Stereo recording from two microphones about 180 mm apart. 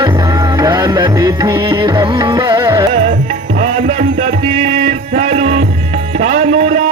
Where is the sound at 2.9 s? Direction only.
35° right (ahead or behind).